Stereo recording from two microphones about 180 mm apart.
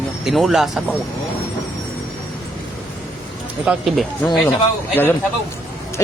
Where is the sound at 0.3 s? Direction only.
Centre (ahead or behind).